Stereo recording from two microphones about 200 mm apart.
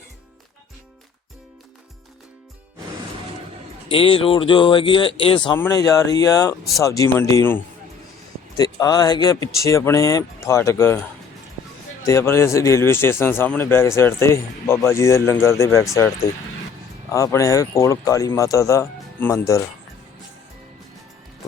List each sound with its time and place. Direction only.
3.8 s speech: 25° left (ahead or behind)
5.5 s speech: 15° left (ahead or behind)
12.0 s speech: 15° left (ahead or behind)
17.1 s speech: 15° left (ahead or behind)